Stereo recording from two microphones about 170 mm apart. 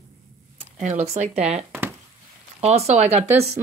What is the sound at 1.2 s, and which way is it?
Speech, 40° right (ahead or behind).